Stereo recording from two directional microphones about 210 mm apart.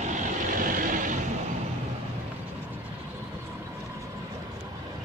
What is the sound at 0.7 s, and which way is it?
Vehicle, 40° right (ahead or behind).